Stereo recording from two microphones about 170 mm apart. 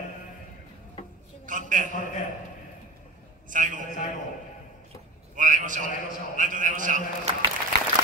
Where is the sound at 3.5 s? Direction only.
50° right (ahead or behind).